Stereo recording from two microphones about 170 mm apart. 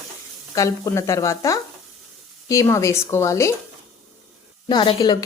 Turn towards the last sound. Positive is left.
turn(degrees=25)  # may be behind; listen again after turning